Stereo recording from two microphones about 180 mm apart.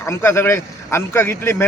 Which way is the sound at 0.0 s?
15° left (ahead or behind).